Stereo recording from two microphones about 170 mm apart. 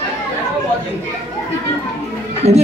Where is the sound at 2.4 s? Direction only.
40° right (ahead or behind).